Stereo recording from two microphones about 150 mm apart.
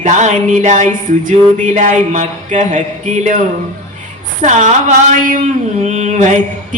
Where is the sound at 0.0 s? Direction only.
55° right (ahead or behind).